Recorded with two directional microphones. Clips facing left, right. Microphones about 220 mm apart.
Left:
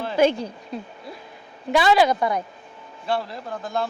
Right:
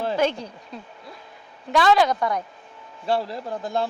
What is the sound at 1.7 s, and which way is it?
Speech, 10° left (ahead or behind).